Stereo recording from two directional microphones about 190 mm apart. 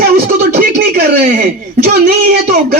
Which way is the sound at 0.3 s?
55° right (ahead or behind).